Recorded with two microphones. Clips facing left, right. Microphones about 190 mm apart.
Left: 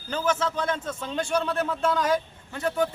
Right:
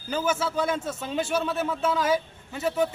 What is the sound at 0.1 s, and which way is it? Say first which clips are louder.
A man's voice: even; 10° right (ahead or behind).